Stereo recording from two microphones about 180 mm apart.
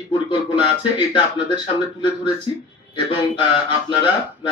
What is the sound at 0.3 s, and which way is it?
Speech, 25° left (ahead or behind).